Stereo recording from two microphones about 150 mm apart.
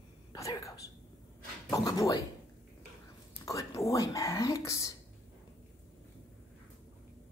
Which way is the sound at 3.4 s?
20° left (ahead or behind).